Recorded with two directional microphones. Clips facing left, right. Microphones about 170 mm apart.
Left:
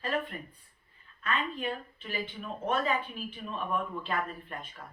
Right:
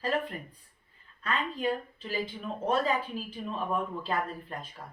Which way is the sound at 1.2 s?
35° right (ahead or behind).